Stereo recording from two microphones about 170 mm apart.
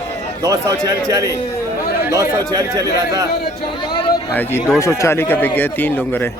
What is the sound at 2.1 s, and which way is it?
Speech, 15° right (ahead or behind).